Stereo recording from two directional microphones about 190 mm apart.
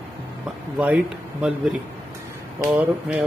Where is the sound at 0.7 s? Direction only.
5° right (ahead or behind).